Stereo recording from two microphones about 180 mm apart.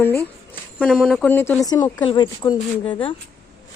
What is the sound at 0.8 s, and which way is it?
Speech, centre (ahead or behind).